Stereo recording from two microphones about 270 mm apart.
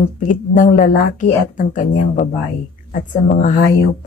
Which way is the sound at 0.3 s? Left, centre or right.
Left.